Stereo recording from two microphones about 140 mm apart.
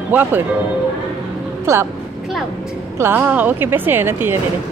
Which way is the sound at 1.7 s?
20° right (ahead or behind).